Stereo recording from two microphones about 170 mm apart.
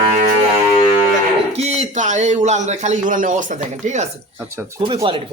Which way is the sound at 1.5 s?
40° right (ahead or behind).